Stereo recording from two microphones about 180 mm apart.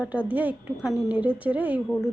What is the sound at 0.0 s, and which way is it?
Speech, 10° right (ahead or behind).